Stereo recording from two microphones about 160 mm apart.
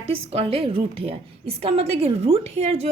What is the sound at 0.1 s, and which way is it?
A woman's voice, 40° right (ahead or behind).